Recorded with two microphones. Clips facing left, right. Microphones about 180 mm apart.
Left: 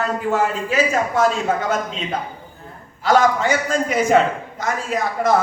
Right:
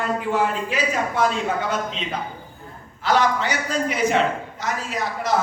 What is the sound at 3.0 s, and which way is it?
A man's voice, 45° left (ahead or behind).